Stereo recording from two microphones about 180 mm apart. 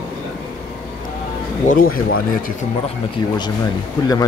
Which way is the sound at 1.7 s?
50° left (ahead or behind).